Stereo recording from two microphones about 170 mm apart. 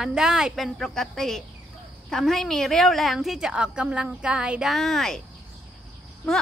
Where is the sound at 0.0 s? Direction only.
5° right (ahead or behind).